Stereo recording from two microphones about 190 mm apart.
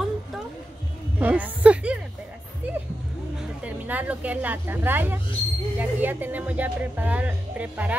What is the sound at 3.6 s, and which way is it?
Speech, 10° right (ahead or behind).